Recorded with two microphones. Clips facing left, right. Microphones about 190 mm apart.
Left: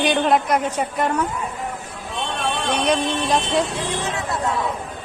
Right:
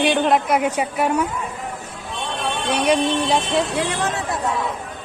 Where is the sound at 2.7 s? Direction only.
10° right (ahead or behind).